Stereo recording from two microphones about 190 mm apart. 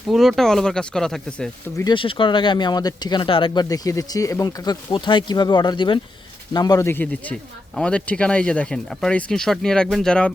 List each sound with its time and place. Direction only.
0.1 s speech: centre (ahead or behind)
1.8 s a man's voice: 25° left (ahead or behind); by 10.3 s 5° left (ahead or behind)